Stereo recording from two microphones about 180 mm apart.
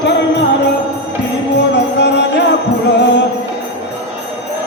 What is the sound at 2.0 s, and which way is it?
Music, 70° left (ahead or behind).